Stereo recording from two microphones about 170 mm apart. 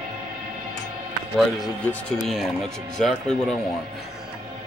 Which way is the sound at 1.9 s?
10° left (ahead or behind).